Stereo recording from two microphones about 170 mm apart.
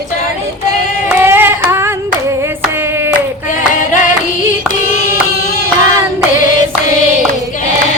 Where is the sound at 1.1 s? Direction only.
10° right (ahead or behind).